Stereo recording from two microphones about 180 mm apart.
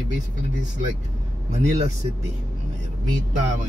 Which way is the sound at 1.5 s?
35° right (ahead or behind).